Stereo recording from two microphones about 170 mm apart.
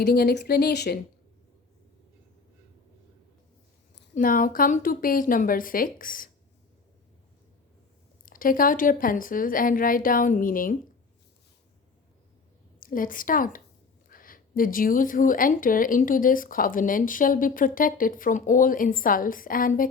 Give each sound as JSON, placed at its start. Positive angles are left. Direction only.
{"t": 0.0, "sound": "speech", "side_deg": 70}
{"t": 4.1, "sound": "speech", "side_deg": 55}
{"t": 8.2, "sound": "speech", "side_deg": 55}
{"t": 12.8, "sound": "speech", "side_deg": 55}